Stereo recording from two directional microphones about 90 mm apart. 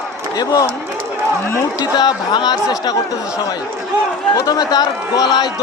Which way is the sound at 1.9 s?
50° left (ahead or behind).